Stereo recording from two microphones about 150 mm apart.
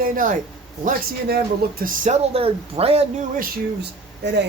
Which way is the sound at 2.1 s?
40° right (ahead or behind).